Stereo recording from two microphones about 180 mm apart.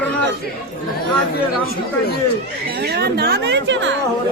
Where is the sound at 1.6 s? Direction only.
55° left (ahead or behind).